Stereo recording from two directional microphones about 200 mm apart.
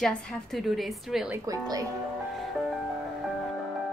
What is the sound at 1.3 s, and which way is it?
Speech, 15° right (ahead or behind).